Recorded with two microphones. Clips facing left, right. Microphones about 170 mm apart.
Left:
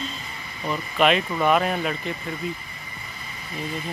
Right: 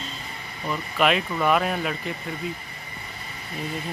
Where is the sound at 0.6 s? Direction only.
5° right (ahead or behind).